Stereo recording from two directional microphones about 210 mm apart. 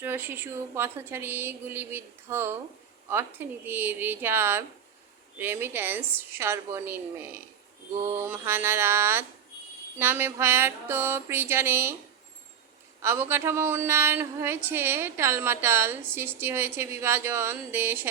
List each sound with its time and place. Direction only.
0.0 s a woman's voice: 10° right (ahead or behind)
13.0 s a woman's voice: 10° right (ahead or behind)